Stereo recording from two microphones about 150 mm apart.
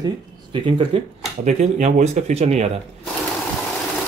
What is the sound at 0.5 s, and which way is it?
Speech, 35° right (ahead or behind).